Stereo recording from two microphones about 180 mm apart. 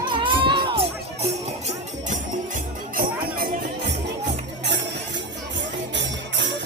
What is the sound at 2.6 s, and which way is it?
Music, 50° right (ahead or behind).